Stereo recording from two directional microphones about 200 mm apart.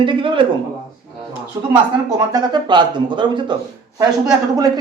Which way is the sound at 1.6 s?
20° right (ahead or behind).